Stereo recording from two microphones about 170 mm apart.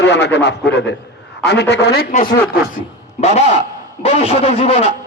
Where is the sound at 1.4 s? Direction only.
80° left.